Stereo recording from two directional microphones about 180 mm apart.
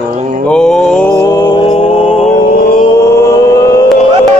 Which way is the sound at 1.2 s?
20° left (ahead or behind).